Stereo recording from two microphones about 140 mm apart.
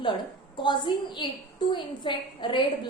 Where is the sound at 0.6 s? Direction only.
35° left (ahead or behind).